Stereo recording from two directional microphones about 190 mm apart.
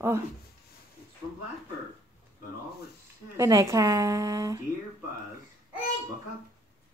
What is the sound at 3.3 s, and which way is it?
A woman's voice, 15° right (ahead or behind).